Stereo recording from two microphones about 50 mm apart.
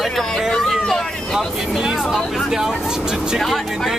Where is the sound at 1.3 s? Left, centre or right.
Centre.